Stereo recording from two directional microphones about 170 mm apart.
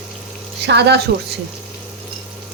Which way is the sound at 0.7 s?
80° right.